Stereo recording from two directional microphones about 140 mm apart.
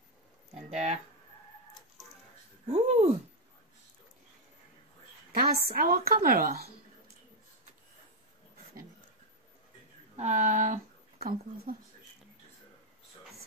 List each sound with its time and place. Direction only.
0.6 s speech: 50° right (ahead or behind)
2.6 s a sound: 45° right (ahead or behind)
5.3 s a woman's voice: 90° right
10.1 s speech: 60° right (ahead or behind); by 11.7 s 90° right